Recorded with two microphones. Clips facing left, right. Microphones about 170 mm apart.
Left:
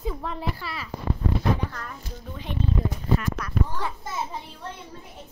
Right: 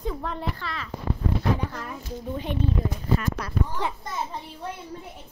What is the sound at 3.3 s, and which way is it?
Speech, 25° right (ahead or behind).